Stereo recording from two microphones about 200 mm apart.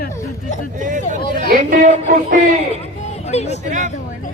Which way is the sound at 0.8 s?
40° right (ahead or behind).